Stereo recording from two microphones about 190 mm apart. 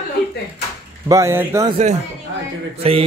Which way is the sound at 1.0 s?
15° right (ahead or behind).